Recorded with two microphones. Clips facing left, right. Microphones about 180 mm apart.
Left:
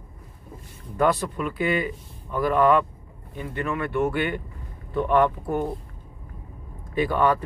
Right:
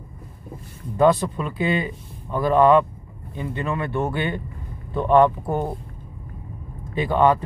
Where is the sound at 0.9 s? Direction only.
20° right (ahead or behind).